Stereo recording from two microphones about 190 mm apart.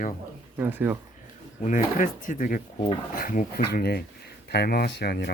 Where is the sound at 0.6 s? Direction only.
10° right (ahead or behind).